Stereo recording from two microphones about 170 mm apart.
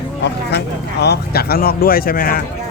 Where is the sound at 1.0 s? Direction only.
70° left (ahead or behind).